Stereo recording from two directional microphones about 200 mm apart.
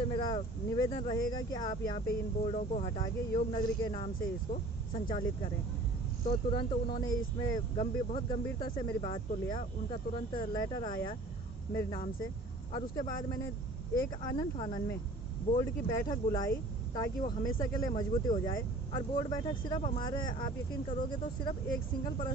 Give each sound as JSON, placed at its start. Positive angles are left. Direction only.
{"t": 0.0, "sound": "speech", "side_deg": 25}
{"t": 7.7, "sound": "speech", "side_deg": 30}
{"t": 12.7, "sound": "speech", "side_deg": 20}